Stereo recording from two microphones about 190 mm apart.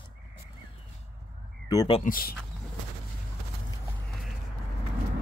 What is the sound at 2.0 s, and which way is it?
Speech, 50° left (ahead or behind).